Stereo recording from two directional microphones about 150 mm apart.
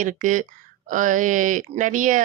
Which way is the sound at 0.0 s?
60° right (ahead or behind).